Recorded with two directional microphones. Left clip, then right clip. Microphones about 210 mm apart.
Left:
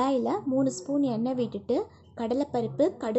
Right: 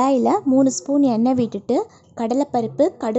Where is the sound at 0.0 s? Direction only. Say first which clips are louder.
Right 9 dB; 20° right (ahead or behind).